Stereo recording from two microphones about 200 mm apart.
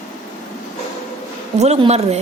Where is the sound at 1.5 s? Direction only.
30° right (ahead or behind).